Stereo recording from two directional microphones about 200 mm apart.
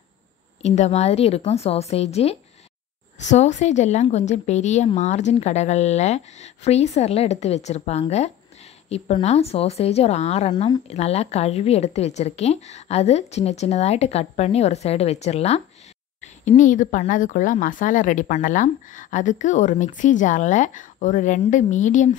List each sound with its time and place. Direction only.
0.6 s speech: 35° left (ahead or behind)